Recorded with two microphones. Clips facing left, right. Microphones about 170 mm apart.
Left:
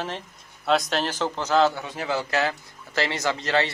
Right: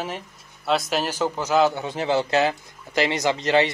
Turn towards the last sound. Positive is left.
turn(degrees=-20)  # may be behind; listen again after turning